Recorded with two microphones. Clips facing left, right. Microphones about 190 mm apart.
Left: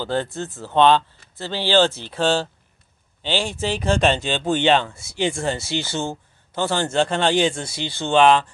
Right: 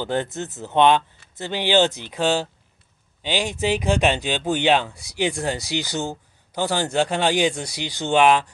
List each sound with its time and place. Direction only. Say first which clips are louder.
0.0 s speech: even; 20° right (ahead or behind)